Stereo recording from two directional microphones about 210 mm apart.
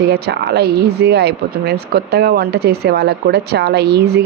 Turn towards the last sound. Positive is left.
turn(degrees=-50)  # may be behind; listen again after turning